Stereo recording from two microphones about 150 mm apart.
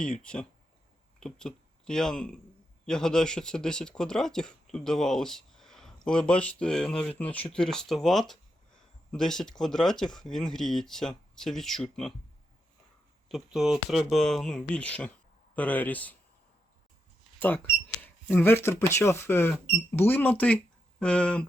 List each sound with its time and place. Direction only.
0.0 s speech: 5° left (ahead or behind)
13.2 s speech: centre (ahead or behind)
18.0 s speech: 15° left (ahead or behind)